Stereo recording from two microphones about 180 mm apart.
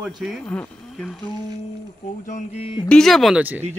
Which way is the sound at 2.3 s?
35° left (ahead or behind).